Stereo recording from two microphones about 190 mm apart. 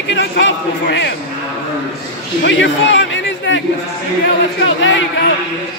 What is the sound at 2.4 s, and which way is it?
A man's voice, 70° left (ahead or behind).